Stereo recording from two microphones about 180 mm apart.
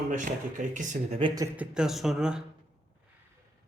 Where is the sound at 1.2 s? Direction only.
25° right (ahead or behind).